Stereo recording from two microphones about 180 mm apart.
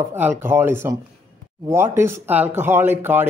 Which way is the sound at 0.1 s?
10° right (ahead or behind).